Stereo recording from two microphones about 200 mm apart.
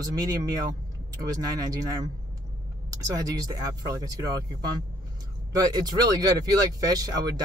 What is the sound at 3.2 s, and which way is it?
Speech, 20° right (ahead or behind).